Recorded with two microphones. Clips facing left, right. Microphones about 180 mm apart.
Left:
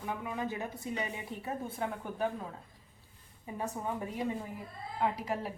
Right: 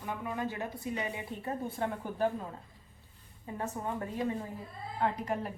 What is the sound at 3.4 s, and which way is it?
A woman's voice, 15° left (ahead or behind).